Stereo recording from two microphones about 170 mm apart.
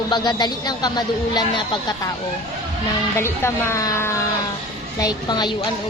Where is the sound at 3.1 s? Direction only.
15° left (ahead or behind).